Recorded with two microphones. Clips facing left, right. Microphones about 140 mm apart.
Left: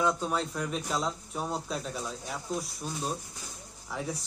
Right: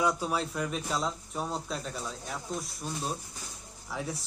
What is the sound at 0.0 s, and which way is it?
A man's voice, 10° right (ahead or behind).